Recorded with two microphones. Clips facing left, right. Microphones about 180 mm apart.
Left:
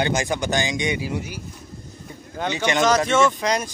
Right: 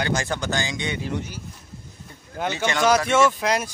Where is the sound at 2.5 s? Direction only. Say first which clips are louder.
Left 4 dB; 15° left (ahead or behind).